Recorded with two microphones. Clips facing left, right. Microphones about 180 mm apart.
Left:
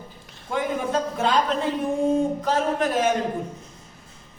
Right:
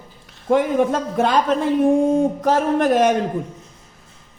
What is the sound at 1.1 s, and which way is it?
A woman's voice, 50° right (ahead or behind).